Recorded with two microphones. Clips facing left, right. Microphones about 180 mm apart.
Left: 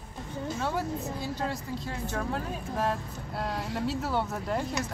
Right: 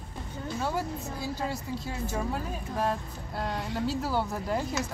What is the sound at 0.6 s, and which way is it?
Speech, 5° right (ahead or behind).